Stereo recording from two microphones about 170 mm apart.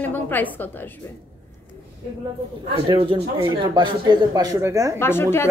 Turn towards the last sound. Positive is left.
turn(degrees=15)  # may be behind; listen again after turning